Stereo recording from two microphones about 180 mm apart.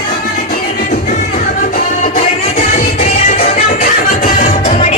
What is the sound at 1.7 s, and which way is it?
Music, 45° left (ahead or behind).